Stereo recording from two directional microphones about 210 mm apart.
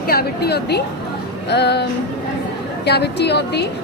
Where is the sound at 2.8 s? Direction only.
50° left (ahead or behind).